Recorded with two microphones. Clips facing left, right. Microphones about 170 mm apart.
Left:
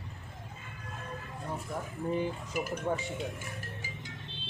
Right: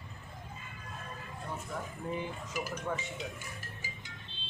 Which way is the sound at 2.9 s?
30° left (ahead or behind).